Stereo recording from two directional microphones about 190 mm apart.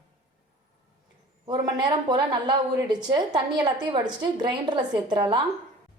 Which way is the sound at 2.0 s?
25° right (ahead or behind).